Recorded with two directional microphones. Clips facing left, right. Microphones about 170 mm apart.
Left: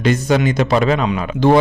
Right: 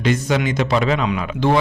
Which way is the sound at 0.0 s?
45° left (ahead or behind).